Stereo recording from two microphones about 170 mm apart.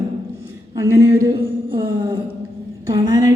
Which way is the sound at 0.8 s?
15° right (ahead or behind).